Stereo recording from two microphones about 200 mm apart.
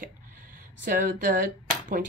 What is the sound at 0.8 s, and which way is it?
Speech, 45° right (ahead or behind).